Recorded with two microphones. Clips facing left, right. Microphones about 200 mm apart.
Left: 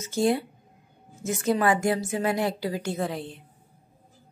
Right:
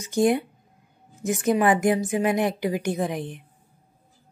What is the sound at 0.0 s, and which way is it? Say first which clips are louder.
A woman's voice: right 3 dB; 15° right (ahead or behind).